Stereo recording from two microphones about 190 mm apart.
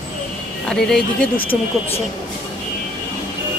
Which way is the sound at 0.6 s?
5° left (ahead or behind).